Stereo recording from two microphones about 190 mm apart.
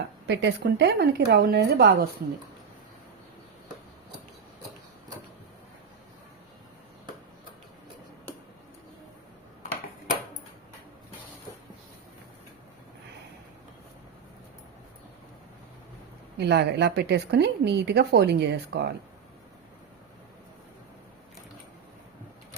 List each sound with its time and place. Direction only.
0.3 s speech: 65° right (ahead or behind)
16.4 s speech: 60° right (ahead or behind)